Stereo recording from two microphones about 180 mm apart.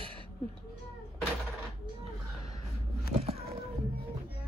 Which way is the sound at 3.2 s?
35° right (ahead or behind).